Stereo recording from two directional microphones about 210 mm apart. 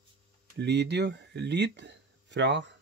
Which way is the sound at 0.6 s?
55° right (ahead or behind).